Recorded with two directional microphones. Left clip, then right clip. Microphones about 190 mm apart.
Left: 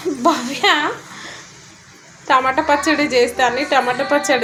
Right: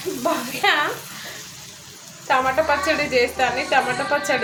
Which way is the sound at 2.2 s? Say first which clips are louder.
Left 4 dB; 35° left (ahead or behind).